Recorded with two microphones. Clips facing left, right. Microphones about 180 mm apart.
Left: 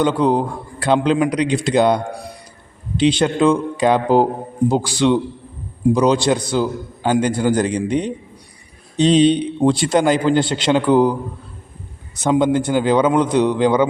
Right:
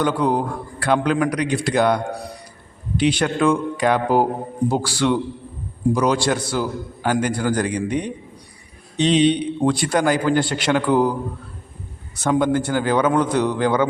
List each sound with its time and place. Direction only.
0.0 s a man's voice: 25° left (ahead or behind)
3.0 s a man's voice: 20° left (ahead or behind)
9.0 s a man's voice: 35° left (ahead or behind)
12.1 s a man's voice: 20° left (ahead or behind)